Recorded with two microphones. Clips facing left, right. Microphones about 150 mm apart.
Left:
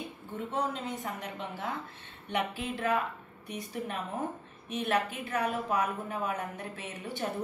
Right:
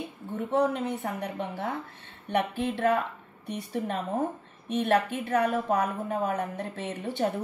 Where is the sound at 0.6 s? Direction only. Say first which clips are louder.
Right 8 dB; 60° right (ahead or behind).